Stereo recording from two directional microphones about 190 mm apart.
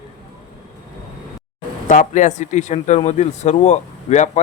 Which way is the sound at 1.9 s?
40° left (ahead or behind).